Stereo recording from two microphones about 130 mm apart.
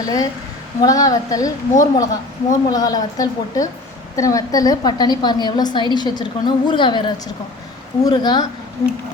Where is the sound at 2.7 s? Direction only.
30° left (ahead or behind).